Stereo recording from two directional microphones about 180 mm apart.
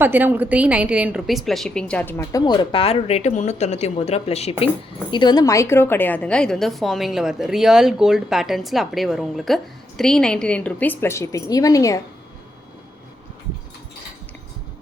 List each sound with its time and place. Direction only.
0.0 s a woman's voice: 10° right (ahead or behind); by 2.4 s 10° left (ahead or behind)
2.4 s speech: 25° left (ahead or behind)
5.1 s a woman's voice: 25° left (ahead or behind)